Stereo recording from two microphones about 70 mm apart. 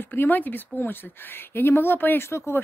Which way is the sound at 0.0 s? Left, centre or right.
Left.